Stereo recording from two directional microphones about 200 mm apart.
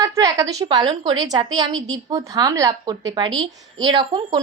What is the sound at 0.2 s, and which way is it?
A woman's voice, 15° right (ahead or behind).